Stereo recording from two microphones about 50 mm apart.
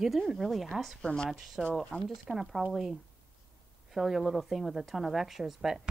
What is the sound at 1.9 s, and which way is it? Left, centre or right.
Speech, left.